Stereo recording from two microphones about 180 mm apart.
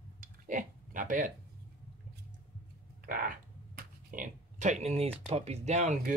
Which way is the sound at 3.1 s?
50° right (ahead or behind).